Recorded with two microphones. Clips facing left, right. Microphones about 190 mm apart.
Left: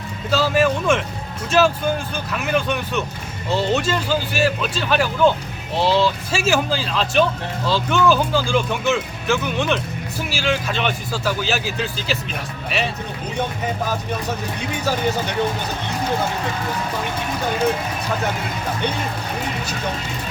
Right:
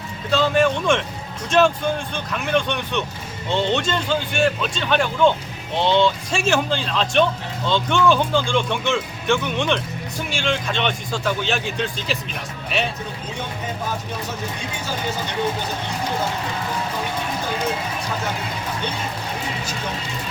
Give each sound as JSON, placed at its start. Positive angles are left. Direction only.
{"t": 0.3, "sound": "speech", "side_deg": 5}